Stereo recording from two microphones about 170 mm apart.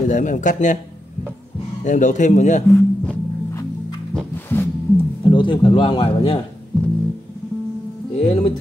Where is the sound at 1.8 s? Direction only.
45° left (ahead or behind).